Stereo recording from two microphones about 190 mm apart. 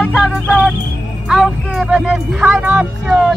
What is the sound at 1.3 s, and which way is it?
Speech, centre (ahead or behind).